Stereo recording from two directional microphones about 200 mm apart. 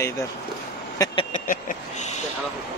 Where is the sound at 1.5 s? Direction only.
40° left (ahead or behind).